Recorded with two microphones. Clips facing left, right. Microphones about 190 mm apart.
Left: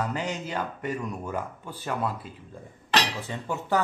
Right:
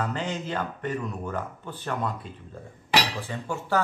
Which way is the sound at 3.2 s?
20° left (ahead or behind).